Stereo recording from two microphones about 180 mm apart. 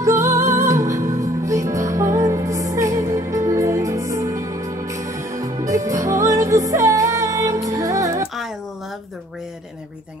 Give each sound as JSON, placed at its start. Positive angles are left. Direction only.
{"t": 0.0, "sound": "music", "side_deg": -15}